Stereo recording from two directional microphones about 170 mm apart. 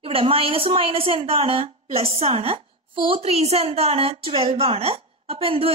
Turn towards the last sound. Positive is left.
turn(degrees=-35)  # may be behind; listen again after turning